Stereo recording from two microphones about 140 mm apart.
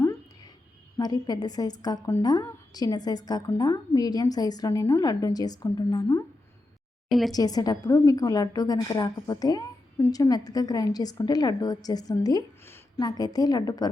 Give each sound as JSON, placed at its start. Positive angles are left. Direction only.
{"t": 0.9, "sound": "a woman's voice", "side_deg": 30}
{"t": 7.1, "sound": "a woman's voice", "side_deg": 0}
{"t": 7.3, "sound": "a woman's voice", "side_deg": 25}